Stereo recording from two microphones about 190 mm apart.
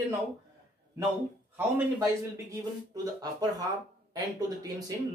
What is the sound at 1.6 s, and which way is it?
Speech, 10° right (ahead or behind).